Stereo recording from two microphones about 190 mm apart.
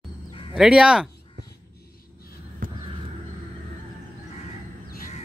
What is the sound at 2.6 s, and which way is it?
Crow, 45° right (ahead or behind).